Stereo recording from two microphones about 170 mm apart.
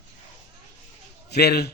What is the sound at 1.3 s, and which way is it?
Speech, 70° left (ahead or behind).